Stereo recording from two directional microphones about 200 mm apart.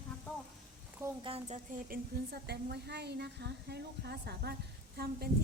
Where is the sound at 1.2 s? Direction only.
30° right (ahead or behind).